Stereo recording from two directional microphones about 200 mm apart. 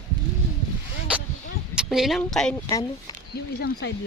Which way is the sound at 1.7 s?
Centre (ahead or behind).